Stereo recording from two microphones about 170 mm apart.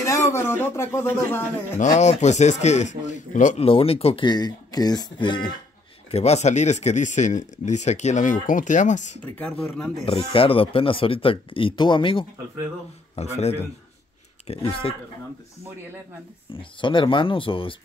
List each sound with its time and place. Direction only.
0.0 s speech: 20° left (ahead or behind)
2.0 s speech: 45° left (ahead or behind)
3.6 s speech: 35° left (ahead or behind)
6.1 s speech: 40° left (ahead or behind)
10.0 s speech: 35° left (ahead or behind)
16.8 s speech: 30° left (ahead or behind)